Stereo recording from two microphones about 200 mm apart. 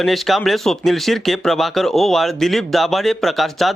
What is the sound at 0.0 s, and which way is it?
Speech, centre (ahead or behind).